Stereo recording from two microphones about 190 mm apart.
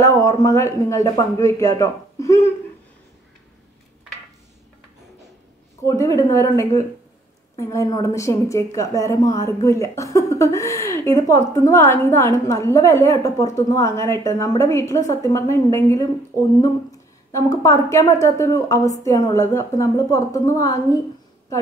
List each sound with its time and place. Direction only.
0.0 s a woman's voice: 15° left (ahead or behind)
5.9 s a woman's voice: 15° left (ahead or behind)